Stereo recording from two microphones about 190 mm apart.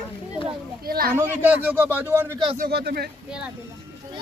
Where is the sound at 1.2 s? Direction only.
10° right (ahead or behind).